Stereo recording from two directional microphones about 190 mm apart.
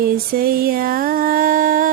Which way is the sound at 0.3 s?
50° right (ahead or behind).